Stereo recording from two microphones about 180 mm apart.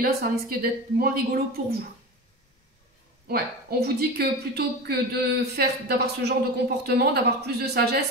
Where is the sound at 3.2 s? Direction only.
60° right (ahead or behind).